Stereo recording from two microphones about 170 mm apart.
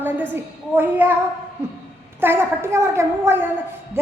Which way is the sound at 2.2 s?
15° right (ahead or behind).